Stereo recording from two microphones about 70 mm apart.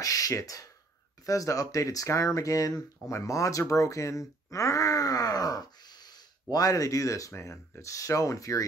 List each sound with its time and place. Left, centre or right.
0.0 s speech: left